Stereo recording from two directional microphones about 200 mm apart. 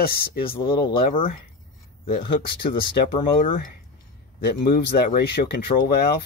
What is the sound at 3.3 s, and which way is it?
Speech, 40° left (ahead or behind).